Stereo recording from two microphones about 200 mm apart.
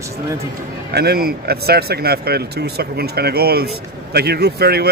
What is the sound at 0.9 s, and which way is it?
Speech, 55° right (ahead or behind).